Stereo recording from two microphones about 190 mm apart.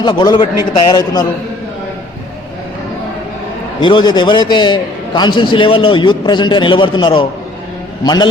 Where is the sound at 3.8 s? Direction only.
25° left (ahead or behind).